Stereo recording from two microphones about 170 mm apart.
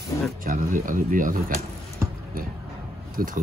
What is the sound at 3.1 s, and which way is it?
Speech, 50° right (ahead or behind).